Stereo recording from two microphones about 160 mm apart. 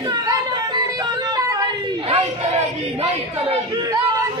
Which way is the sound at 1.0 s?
25° right (ahead or behind).